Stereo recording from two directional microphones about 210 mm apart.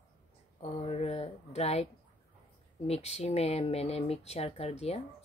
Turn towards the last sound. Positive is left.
turn(degrees=30)  # may be behind; listen again after turning